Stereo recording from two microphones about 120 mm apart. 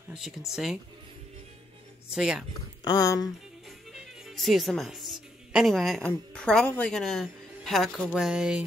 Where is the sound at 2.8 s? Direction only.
30° left (ahead or behind).